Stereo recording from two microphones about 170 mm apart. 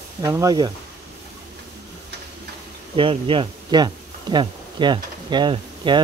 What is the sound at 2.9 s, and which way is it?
Speech, 30° right (ahead or behind).